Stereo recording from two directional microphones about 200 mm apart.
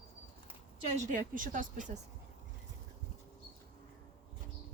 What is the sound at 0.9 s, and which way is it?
Speech, 40° right (ahead or behind).